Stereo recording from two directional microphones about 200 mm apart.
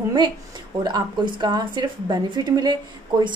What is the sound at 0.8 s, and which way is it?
A woman's voice, 20° right (ahead or behind).